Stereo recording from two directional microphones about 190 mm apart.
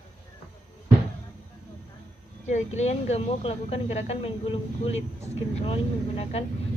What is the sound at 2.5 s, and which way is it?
Speech, 35° left (ahead or behind).